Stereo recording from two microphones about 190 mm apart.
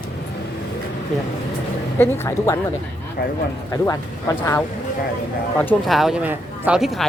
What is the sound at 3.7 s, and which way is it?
Speech, 15° left (ahead or behind).